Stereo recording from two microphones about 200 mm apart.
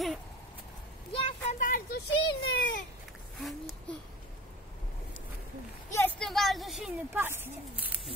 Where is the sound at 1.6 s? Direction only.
45° left (ahead or behind).